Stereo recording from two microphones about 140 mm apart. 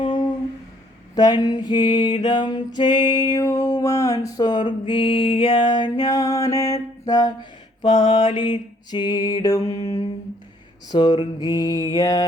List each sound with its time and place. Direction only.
0.0 s humming: 35° left (ahead or behind)
1.1 s mantra: 30° left (ahead or behind)